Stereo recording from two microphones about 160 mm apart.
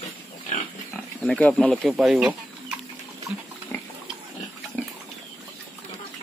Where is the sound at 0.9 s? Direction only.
5° left (ahead or behind).